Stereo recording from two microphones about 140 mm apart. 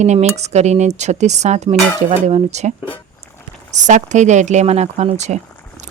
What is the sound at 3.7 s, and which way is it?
Speech, 60° right (ahead or behind).